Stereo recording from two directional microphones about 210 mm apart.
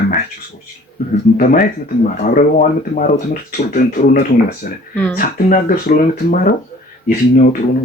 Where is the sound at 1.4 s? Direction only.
40° left (ahead or behind).